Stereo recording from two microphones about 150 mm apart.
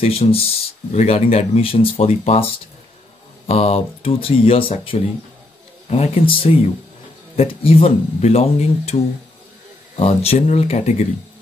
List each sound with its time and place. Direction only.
0.0 s speech: 40° left (ahead or behind)
3.4 s speech: 40° left (ahead or behind)
9.9 s speech: 45° left (ahead or behind)